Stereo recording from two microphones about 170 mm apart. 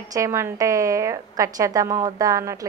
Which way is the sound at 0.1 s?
15° right (ahead or behind).